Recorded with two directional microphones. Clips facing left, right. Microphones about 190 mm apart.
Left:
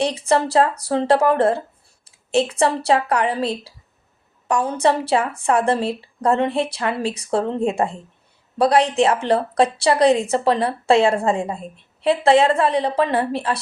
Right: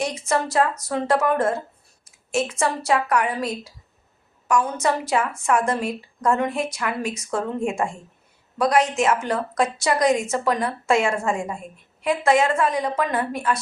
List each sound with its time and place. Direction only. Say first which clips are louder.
0.0 s a woman's voice: left 5 dB; 30° left (ahead or behind)